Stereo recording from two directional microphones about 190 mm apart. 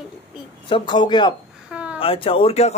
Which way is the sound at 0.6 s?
25° left (ahead or behind).